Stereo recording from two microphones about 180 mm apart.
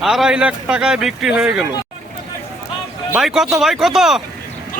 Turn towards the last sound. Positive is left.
turn(degrees=-5)  # may be behind; listen again after turning